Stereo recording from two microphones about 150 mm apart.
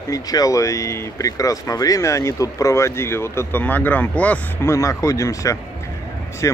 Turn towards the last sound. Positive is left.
turn(degrees=20)  # may be behind; listen again after turning